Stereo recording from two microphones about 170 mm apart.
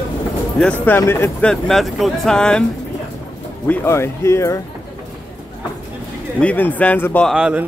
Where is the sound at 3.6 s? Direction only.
15° left (ahead or behind).